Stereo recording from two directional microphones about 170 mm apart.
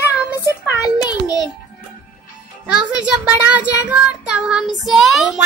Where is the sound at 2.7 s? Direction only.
5° right (ahead or behind).